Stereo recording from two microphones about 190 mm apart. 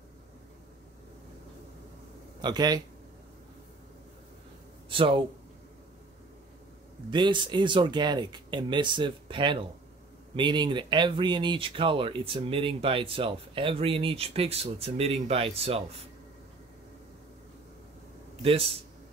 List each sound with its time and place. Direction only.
2.4 s speech: 20° right (ahead or behind)
4.8 s speech: 25° right (ahead or behind)
7.1 s speech: 25° right (ahead or behind)
18.4 s speech: 30° right (ahead or behind)